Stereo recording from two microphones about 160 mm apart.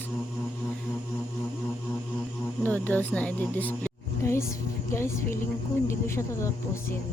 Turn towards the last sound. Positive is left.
turn(degrees=15)  # may be behind; listen again after turning